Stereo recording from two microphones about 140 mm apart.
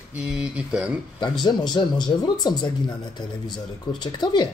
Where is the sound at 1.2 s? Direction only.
30° left (ahead or behind).